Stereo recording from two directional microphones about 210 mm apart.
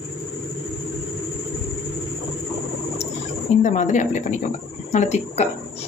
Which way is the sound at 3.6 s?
35° left (ahead or behind).